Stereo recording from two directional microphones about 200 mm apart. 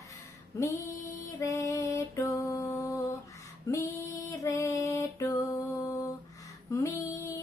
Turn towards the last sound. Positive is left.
turn(degrees=15)  # may be behind; listen again after turning